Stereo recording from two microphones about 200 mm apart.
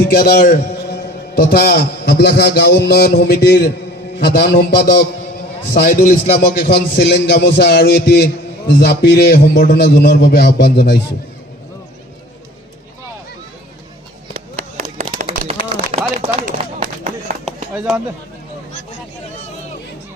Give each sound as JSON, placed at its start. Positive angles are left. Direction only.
{"t": 0.2, "sound": "a man's voice", "side_deg": 45}
{"t": 5.8, "sound": "a man's voice", "side_deg": 45}
{"t": 14.3, "sound": "a sound", "side_deg": -35}